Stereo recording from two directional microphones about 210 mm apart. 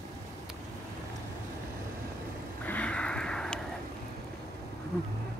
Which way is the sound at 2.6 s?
5° left (ahead or behind).